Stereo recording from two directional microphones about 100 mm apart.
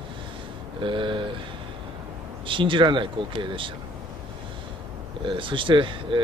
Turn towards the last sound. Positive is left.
turn(degrees=-55)  # may be behind; listen again after turning